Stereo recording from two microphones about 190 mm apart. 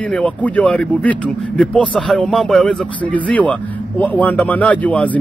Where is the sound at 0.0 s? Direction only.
5° left (ahead or behind).